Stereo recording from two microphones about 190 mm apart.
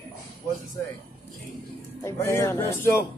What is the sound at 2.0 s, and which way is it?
Speech, 15° left (ahead or behind).